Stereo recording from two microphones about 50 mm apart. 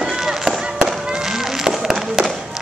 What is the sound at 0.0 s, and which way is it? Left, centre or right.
Chop, centre.